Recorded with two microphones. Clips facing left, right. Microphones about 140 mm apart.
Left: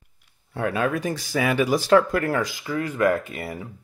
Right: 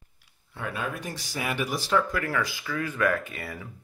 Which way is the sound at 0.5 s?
65° left (ahead or behind).